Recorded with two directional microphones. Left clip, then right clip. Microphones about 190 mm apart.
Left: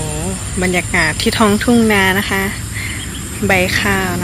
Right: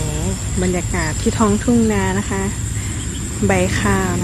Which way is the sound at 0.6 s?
Centre (ahead or behind).